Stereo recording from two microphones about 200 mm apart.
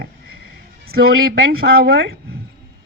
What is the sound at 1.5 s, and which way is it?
Speech, 65° right (ahead or behind).